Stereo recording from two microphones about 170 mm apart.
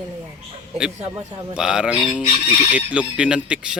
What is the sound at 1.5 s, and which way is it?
Speech, 5° right (ahead or behind).